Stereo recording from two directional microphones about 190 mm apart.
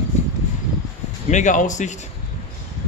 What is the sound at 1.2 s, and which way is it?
Speech, 40° left (ahead or behind).